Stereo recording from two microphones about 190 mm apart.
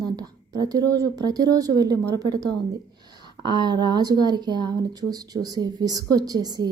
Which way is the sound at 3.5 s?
25° right (ahead or behind).